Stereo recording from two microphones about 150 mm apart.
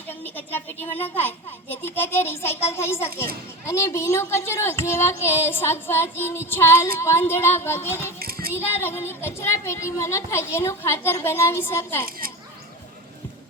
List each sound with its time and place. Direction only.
0.1 s a woman's voice: 10° left (ahead or behind)
8.2 s child singing: 90° right
8.6 s speech: 15° left (ahead or behind)